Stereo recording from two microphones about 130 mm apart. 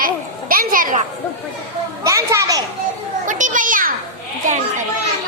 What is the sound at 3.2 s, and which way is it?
Children playing, 80° right.